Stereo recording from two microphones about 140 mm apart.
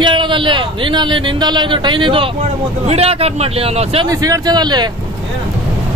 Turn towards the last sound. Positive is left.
turn(degrees=-30)  # may be behind; listen again after turning